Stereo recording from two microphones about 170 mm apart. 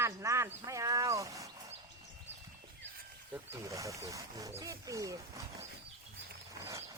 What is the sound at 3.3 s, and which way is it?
Speech, 15° right (ahead or behind).